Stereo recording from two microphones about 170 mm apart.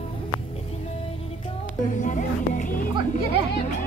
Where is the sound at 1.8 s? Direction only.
45° left (ahead or behind).